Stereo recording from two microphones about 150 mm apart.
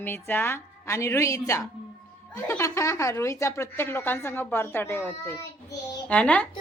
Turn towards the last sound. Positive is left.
turn(degrees=10)  # may be behind; listen again after turning